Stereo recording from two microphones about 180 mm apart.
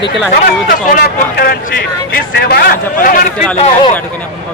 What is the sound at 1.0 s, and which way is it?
A man's voice, 60° left (ahead or behind).